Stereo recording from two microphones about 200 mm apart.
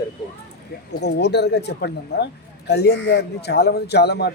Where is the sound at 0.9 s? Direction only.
55° left (ahead or behind).